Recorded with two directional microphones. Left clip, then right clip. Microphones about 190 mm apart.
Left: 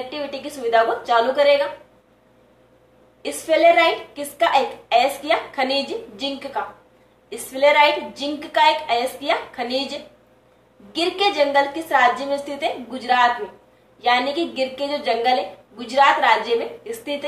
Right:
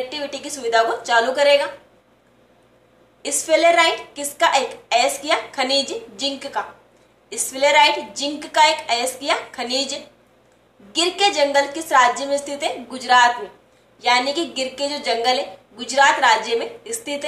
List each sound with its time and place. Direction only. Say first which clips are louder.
0.1 s a woman's voice: even; 15° right (ahead or behind)
3.2 s a woman's voice: even; 15° right (ahead or behind)